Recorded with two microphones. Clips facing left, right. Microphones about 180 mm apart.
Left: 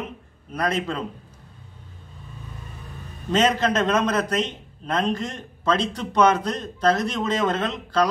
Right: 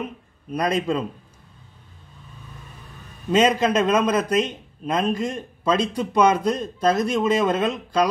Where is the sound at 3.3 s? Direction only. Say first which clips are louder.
Right 2 dB; 10° right (ahead or behind).